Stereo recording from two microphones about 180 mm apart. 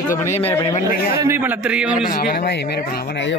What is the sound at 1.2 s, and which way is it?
Speech, 10° right (ahead or behind).